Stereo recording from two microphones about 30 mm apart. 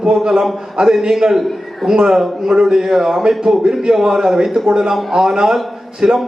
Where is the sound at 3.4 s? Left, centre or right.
Right.